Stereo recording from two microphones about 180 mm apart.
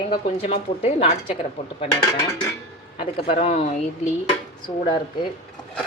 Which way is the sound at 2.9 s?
30° left (ahead or behind).